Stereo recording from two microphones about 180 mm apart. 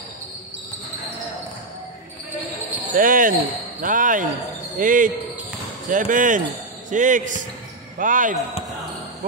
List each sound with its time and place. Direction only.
3.0 s speech: 50° right (ahead or behind)